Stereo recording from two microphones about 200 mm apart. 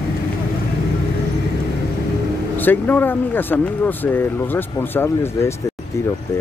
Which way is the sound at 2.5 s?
10° left (ahead or behind).